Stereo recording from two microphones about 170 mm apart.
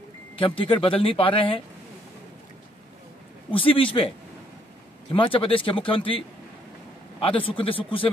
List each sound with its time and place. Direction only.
0.4 s speech: 30° left (ahead or behind)
3.4 s speech: 30° left (ahead or behind)
5.1 s speech: 30° left (ahead or behind)